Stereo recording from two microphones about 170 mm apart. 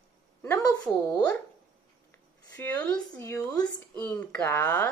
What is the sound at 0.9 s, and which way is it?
Speech, 10° left (ahead or behind).